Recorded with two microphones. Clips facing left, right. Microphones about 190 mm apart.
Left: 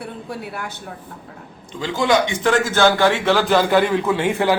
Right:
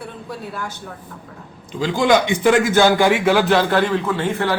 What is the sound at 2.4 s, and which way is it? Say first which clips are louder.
A man's voice: right 3 dB; 15° right (ahead or behind).